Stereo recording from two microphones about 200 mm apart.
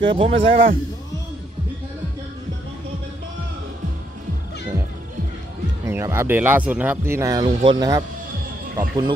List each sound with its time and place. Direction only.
0.0 s a man's voice: 25° right (ahead or behind)
0.4 s a man's voice: 55° right (ahead or behind)
5.9 s speech: 15° right (ahead or behind)